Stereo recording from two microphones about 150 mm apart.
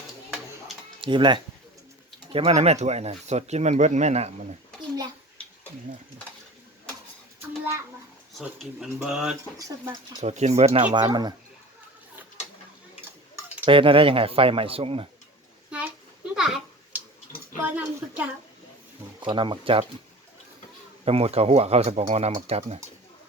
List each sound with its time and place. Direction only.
1.0 s speech: 35° right (ahead or behind)
2.3 s speech: 45° right (ahead or behind)
8.3 s speech: centre (ahead or behind)
9.6 s speech: 25° right (ahead or behind)
10.2 s speech: 50° right (ahead or behind)
10.9 s speech: 30° right (ahead or behind)
13.7 s speech: 35° right (ahead or behind)
15.7 s a sound: 5° right (ahead or behind)
17.6 s speech: 10° right (ahead or behind)
19.2 s speech: 35° right (ahead or behind)
21.0 s speech: 40° right (ahead or behind)